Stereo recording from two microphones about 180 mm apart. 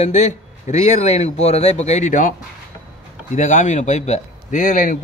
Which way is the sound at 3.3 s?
45° left (ahead or behind).